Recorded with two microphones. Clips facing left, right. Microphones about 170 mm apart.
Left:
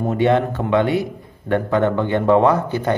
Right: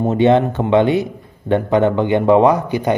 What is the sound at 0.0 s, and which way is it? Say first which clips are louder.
A man's voice: right 4 dB; 20° right (ahead or behind).